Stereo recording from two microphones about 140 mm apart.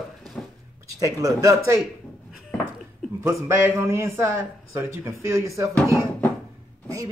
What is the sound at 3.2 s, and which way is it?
A man's voice, 20° right (ahead or behind).